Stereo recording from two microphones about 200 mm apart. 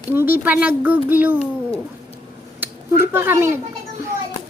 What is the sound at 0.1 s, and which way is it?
A child's voice, 10° right (ahead or behind).